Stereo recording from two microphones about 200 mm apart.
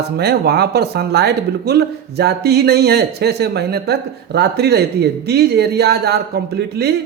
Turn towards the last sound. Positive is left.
turn(degrees=-55)  # may be behind; listen again after turning